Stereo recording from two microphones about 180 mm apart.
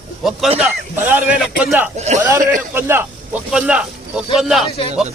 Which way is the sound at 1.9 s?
40° right (ahead or behind).